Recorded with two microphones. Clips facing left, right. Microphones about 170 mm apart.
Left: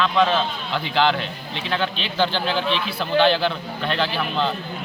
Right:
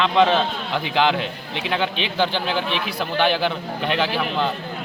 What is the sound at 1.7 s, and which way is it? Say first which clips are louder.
A man's voice: right 1 dB; 15° right (ahead or behind).